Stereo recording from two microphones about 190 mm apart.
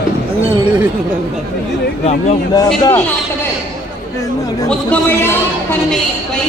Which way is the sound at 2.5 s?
20° left (ahead or behind).